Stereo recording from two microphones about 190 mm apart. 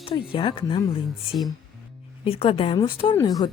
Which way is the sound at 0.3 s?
25° left (ahead or behind).